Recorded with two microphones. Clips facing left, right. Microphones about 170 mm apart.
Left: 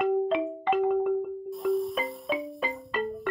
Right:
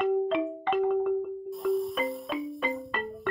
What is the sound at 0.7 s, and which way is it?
Music, 5° left (ahead or behind).